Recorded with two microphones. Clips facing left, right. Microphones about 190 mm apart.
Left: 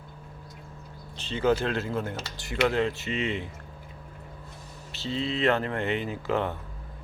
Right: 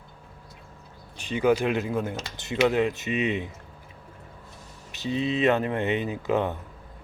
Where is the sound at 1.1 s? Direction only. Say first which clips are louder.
Right 2 dB; 15° right (ahead or behind).